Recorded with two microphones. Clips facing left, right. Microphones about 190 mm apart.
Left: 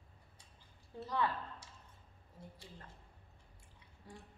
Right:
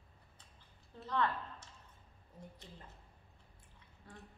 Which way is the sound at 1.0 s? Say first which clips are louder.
Right 1 dB; 10° left (ahead or behind).